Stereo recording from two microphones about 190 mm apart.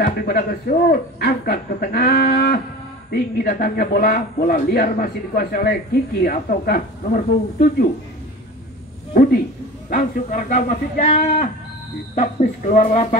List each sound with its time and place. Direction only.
0.0 s a man's voice: 50° left (ahead or behind)
9.1 s speech: 50° left (ahead or behind)